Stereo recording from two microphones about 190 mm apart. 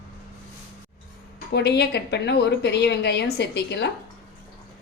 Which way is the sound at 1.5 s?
60° left (ahead or behind).